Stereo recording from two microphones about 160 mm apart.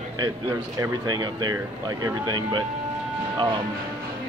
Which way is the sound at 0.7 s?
25° right (ahead or behind).